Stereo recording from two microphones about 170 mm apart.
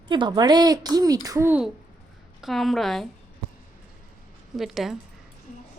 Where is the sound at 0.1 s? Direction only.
25° right (ahead or behind); by 1.7 s 10° right (ahead or behind).